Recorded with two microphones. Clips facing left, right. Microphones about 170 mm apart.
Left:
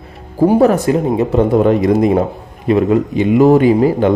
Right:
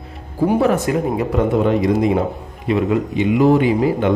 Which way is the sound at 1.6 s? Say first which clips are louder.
Left 4 dB; 50° left (ahead or behind).